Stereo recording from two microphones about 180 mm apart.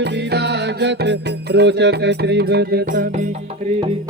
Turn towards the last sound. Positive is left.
turn(degrees=-45)  # may be behind; listen again after turning